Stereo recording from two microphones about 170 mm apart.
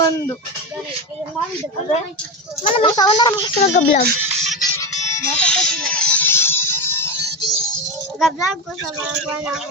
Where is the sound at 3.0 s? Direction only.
25° left (ahead or behind).